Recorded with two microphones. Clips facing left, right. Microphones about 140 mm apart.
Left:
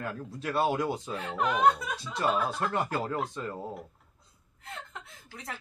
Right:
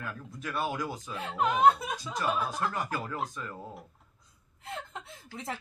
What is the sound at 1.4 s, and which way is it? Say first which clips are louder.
Speech: right 2 dB; 25° right (ahead or behind).